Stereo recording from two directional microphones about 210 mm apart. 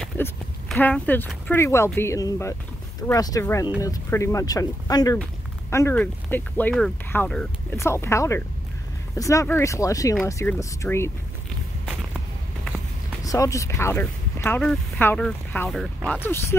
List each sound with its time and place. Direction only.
0.0 s speech: 5° left (ahead or behind)
13.2 s speech: 15° left (ahead or behind)